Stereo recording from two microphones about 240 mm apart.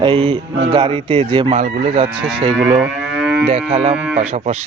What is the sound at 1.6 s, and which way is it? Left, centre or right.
Speech, right.